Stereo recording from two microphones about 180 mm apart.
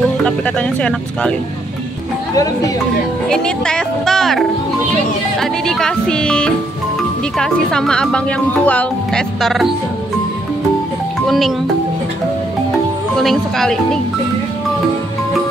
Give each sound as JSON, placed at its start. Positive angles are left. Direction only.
{"t": 0.2, "sound": "speech", "side_deg": 5}
{"t": 2.3, "sound": "speech", "side_deg": 20}
{"t": 3.3, "sound": "speech", "side_deg": 5}
{"t": 11.2, "sound": "speech", "side_deg": 0}
{"t": 13.2, "sound": "speech", "side_deg": 0}